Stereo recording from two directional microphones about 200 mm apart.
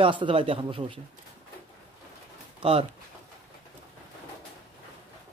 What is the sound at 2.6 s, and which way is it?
Speech, 30° right (ahead or behind).